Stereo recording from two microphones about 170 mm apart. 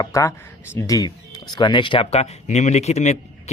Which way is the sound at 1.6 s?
25° left (ahead or behind).